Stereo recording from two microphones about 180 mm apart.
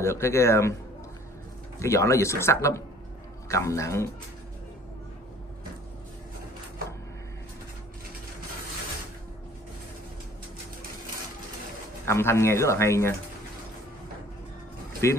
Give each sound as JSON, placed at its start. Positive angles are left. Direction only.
{"t": 0.0, "sound": "speech", "side_deg": 15}
{"t": 1.8, "sound": "speech", "side_deg": 15}
{"t": 12.1, "sound": "speech", "side_deg": 15}
{"t": 15.0, "sound": "speech", "side_deg": 15}